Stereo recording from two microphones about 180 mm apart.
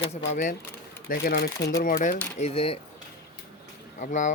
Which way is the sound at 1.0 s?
55° left (ahead or behind).